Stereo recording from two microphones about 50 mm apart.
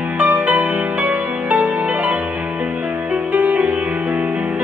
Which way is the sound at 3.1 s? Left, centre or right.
Right.